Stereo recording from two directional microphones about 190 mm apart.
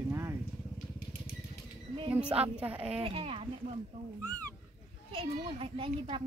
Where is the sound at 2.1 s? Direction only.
5° right (ahead or behind).